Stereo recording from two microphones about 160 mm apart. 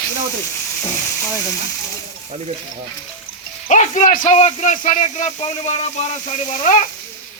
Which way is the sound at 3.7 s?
50° left (ahead or behind).